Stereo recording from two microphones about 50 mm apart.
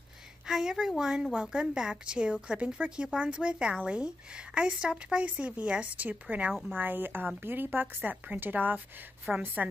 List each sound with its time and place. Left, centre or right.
0.5 s a woman's voice: centre; by 6.5 s right
6.7 s a woman's voice: right
8.0 s a woman's voice: right